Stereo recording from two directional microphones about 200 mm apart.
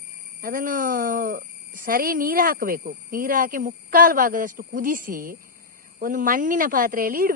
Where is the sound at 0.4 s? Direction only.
45° right (ahead or behind).